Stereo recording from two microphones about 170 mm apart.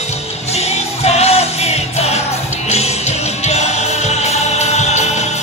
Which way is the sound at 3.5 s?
40° left (ahead or behind).